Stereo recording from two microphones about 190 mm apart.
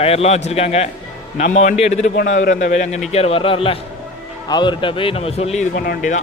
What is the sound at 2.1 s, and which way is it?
A man's voice, 55° left (ahead or behind).